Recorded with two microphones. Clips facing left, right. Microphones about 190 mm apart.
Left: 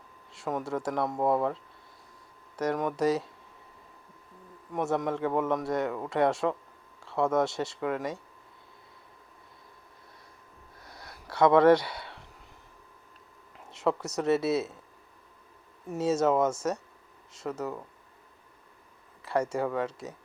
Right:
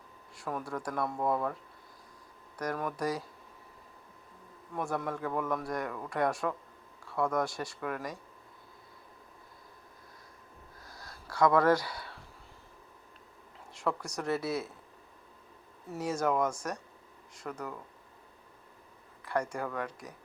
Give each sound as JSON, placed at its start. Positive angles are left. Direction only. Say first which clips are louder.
{"t": 0.3, "sound": "speech", "louder": "left 5 dB", "side_deg": 25}
{"t": 2.6, "sound": "speech", "louder": "left 6 dB", "side_deg": 25}
{"t": 4.7, "sound": "speech", "louder": "left 6 dB", "side_deg": 20}
{"t": 10.8, "sound": "a sound", "louder": "left 3 dB", "side_deg": 20}
{"t": 13.7, "sound": "speech", "louder": "left 5 dB", "side_deg": 25}
{"t": 15.9, "sound": "speech", "louder": "left 6 dB", "side_deg": 25}
{"t": 19.3, "sound": "speech", "louder": "left 5 dB", "side_deg": 25}